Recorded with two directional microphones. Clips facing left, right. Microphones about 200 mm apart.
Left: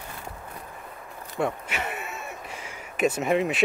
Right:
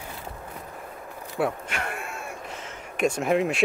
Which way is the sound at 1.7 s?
5° left (ahead or behind).